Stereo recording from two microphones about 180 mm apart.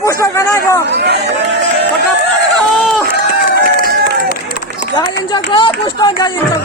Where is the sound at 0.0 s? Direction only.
15° left (ahead or behind).